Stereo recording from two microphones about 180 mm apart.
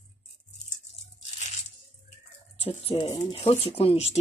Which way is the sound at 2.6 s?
30° left (ahead or behind).